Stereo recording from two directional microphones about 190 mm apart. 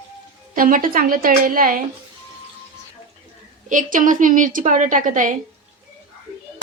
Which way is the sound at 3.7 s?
45° right (ahead or behind).